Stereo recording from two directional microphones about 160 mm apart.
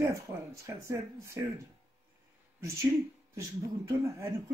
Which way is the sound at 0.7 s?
15° right (ahead or behind).